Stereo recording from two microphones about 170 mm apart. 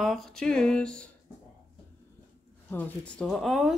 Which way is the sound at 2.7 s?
10° left (ahead or behind).